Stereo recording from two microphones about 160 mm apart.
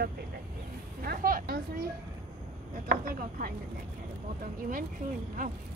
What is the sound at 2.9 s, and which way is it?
Speech, 65° right (ahead or behind).